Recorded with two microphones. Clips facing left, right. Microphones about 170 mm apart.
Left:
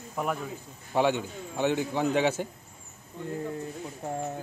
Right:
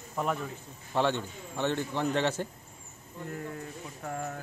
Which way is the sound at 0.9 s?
10° left (ahead or behind).